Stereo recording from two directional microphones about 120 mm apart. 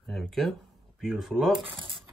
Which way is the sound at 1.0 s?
5° right (ahead or behind).